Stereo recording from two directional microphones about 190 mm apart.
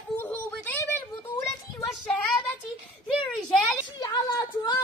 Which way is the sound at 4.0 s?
20° left (ahead or behind).